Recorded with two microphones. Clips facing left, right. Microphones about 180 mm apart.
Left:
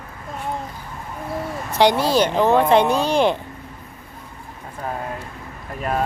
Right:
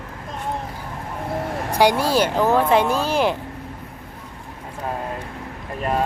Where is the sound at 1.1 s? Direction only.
65° right (ahead or behind).